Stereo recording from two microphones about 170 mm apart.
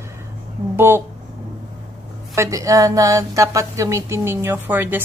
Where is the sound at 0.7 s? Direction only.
15° right (ahead or behind).